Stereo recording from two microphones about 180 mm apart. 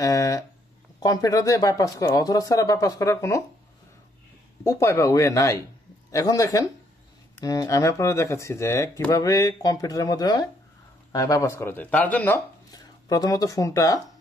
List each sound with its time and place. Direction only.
0.0 s speech: 20° left (ahead or behind)
4.6 s speech: 15° left (ahead or behind)
12.7 s speech: 20° left (ahead or behind)